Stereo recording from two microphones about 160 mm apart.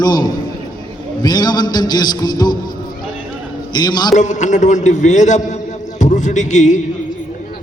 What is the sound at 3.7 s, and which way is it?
Speech, 25° left (ahead or behind).